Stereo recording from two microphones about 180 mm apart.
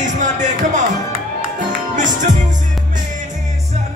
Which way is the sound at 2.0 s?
45° right (ahead or behind).